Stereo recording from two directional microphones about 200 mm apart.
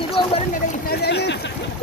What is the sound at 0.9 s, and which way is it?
Speech, 55° left (ahead or behind).